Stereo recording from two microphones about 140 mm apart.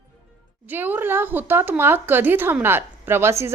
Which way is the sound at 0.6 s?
15° right (ahead or behind).